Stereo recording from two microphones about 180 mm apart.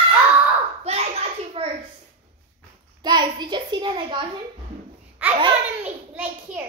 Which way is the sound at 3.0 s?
25° right (ahead or behind).